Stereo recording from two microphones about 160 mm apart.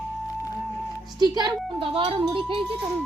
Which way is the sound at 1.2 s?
30° right (ahead or behind).